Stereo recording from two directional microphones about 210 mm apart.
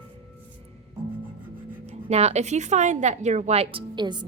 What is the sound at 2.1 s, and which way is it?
A woman's voice, 30° right (ahead or behind).